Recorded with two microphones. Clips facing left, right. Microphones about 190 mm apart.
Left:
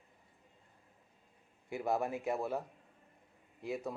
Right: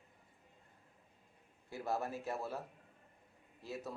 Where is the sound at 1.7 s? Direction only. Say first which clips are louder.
Left 5 dB; 15° left (ahead or behind).